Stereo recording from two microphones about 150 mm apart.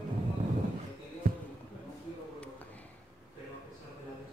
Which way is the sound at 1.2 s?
75° right (ahead or behind).